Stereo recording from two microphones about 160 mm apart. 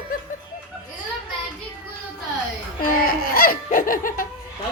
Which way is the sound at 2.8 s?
65° left (ahead or behind).